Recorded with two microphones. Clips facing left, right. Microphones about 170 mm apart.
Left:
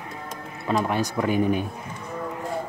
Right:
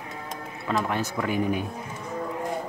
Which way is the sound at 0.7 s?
15° left (ahead or behind).